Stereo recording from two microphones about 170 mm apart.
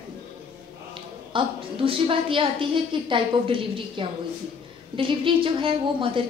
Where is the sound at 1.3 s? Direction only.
30° right (ahead or behind).